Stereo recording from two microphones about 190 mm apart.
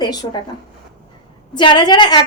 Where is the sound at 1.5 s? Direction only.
25° left (ahead or behind).